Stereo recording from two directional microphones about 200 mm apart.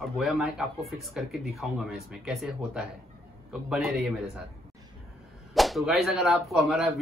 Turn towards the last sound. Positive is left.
turn(degrees=0)  # may be behind; listen again after turning